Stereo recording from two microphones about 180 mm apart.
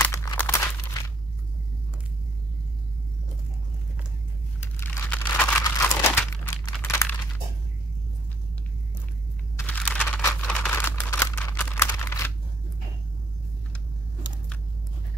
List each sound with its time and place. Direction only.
0.0 s crumpling: 20° left (ahead or behind)
0.4 s a sound: 15° left (ahead or behind)
4.7 s crumpling: 10° left (ahead or behind)
9.6 s computer keyboard: 10° left (ahead or behind)